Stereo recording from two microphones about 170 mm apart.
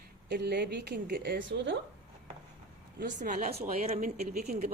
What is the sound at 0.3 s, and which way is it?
A woman's voice, 70° right (ahead or behind).